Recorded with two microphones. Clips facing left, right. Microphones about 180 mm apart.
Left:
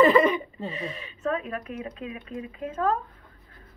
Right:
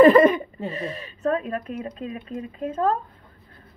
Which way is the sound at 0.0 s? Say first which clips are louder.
Right 5 dB; 50° right (ahead or behind).